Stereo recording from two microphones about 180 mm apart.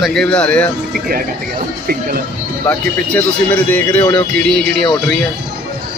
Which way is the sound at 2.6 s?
10° left (ahead or behind).